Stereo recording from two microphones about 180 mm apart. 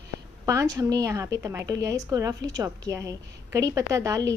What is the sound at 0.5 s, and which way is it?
A woman's voice, 20° right (ahead or behind).